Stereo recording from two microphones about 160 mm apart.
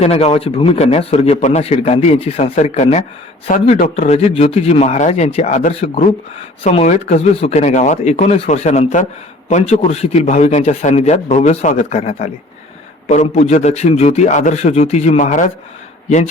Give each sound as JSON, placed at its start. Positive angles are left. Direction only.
{"t": 0.0, "sound": "a man's voice", "side_deg": 40}
{"t": 3.5, "sound": "a man's voice", "side_deg": 55}
{"t": 4.0, "sound": "a man's voice", "side_deg": 40}